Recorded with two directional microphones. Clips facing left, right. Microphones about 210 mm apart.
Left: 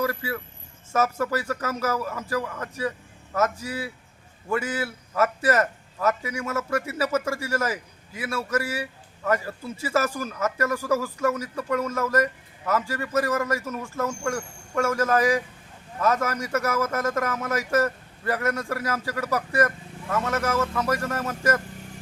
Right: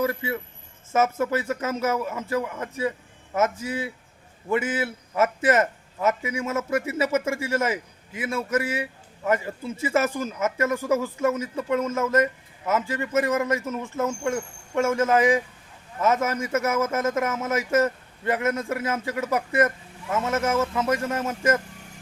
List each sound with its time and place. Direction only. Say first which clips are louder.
0.0 s speech: right 2 dB; 20° right (ahead or behind)